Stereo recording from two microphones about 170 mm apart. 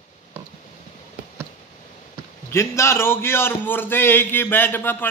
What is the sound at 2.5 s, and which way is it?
A man's voice, 15° left (ahead or behind).